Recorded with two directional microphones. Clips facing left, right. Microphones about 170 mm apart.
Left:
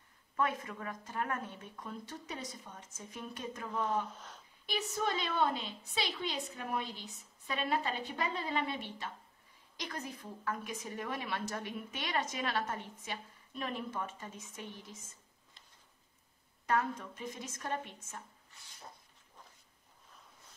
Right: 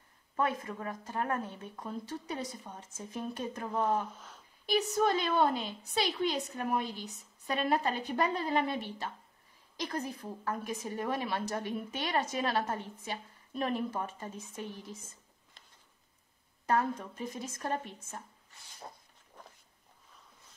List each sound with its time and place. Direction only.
0.4 s a woman's voice: 35° right (ahead or behind)
16.6 s a woman's voice: 35° right (ahead or behind)